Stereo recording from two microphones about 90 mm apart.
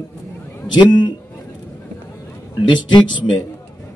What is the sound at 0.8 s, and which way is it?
Speech, 55° left (ahead or behind).